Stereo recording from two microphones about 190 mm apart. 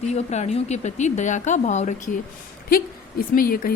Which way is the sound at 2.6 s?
50° left (ahead or behind).